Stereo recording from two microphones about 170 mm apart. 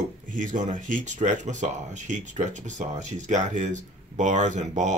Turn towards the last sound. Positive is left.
turn(degrees=-45)  # may be behind; listen again after turning